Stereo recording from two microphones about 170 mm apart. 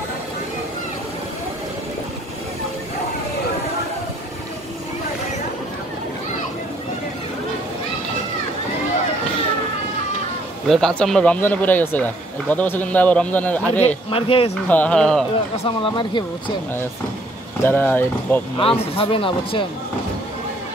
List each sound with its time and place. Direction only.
10.7 s speech: 5° left (ahead or behind)
14.1 s speech: 35° left (ahead or behind)
14.7 s speech: 5° left (ahead or behind)
15.6 s speech: 30° left (ahead or behind)
17.6 s speech: 10° left (ahead or behind)
18.6 s speech: 35° left (ahead or behind)